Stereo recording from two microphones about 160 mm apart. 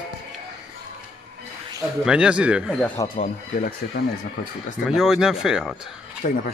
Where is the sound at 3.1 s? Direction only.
60° left (ahead or behind).